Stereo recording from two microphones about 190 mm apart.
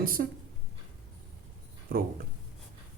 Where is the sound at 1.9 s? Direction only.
50° right (ahead or behind).